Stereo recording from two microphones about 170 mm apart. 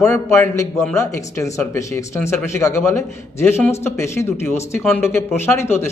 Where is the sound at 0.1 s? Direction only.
15° left (ahead or behind).